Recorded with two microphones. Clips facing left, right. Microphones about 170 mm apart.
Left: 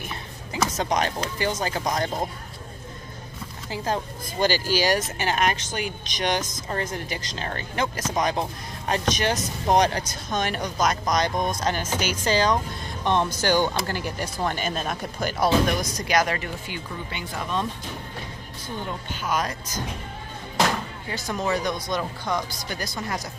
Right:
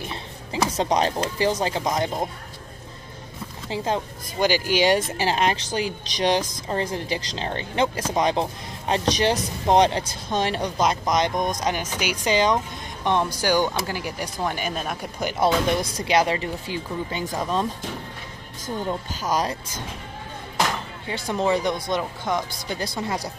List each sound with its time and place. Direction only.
0.0 s speech: 30° right (ahead or behind)
3.7 s speech: 20° right (ahead or behind); by 17.6 s 40° right (ahead or behind)
19.2 s speech: 30° right (ahead or behind)
21.1 s speech: 25° right (ahead or behind)